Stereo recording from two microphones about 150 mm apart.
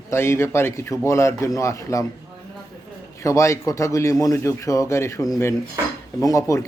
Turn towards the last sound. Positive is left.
turn(degrees=20)  # may be behind; listen again after turning